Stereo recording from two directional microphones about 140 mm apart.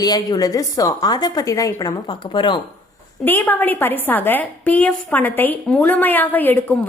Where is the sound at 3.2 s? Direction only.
15° left (ahead or behind).